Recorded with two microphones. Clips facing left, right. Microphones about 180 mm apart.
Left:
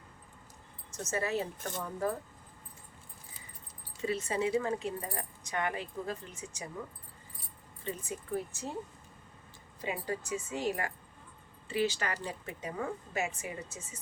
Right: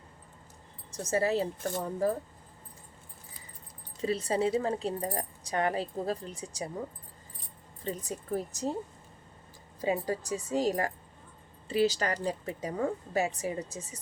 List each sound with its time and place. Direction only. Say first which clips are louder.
0.9 s speech: right 6 dB; 35° right (ahead or behind)
4.0 s speech: right 4 dB; 35° right (ahead or behind)
7.9 s speech: right 3 dB; 40° right (ahead or behind)
9.8 s speech: right 6 dB; 35° right (ahead or behind)